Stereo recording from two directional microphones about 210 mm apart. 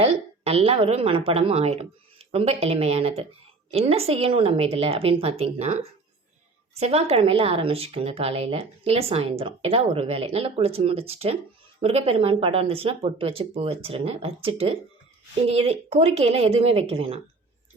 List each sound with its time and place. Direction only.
0.0 s a woman's voice: 30° right (ahead or behind)